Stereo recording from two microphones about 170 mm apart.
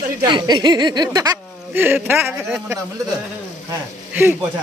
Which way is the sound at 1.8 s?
10° right (ahead or behind).